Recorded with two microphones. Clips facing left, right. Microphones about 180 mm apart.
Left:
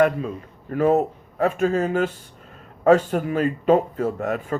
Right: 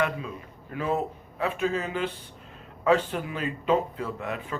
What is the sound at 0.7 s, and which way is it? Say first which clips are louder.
Speech: left 9 dB; 45° left (ahead or behind).